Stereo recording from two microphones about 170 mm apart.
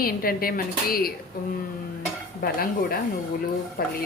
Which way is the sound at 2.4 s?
60° left (ahead or behind).